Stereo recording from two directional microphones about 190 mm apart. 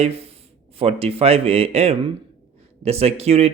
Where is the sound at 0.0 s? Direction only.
30° right (ahead or behind).